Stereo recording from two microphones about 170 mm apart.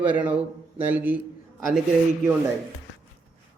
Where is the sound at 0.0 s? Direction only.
10° right (ahead or behind).